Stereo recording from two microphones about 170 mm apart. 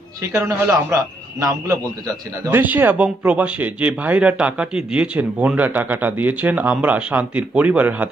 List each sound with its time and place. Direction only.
0.3 s a man's voice: 15° right (ahead or behind)